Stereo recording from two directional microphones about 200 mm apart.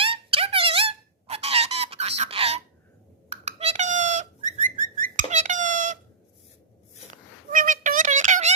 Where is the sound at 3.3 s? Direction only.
30° right (ahead or behind).